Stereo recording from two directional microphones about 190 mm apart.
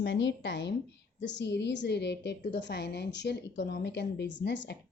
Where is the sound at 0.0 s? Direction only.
75° left (ahead or behind).